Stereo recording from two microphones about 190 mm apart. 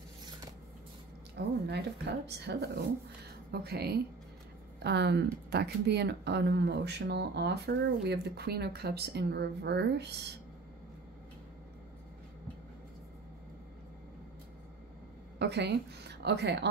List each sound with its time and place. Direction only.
1.3 s speech: 60° right (ahead or behind)
15.3 s a woman's voice: 60° right (ahead or behind)